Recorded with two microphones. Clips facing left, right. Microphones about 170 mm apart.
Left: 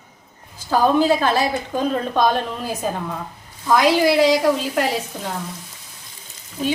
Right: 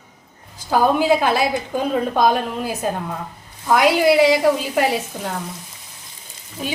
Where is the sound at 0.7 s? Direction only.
10° right (ahead or behind).